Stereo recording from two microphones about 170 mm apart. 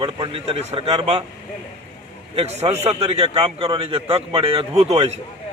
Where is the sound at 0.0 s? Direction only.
30° right (ahead or behind).